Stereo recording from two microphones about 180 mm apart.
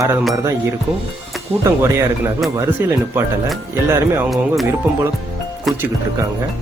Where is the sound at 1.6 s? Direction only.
15° right (ahead or behind).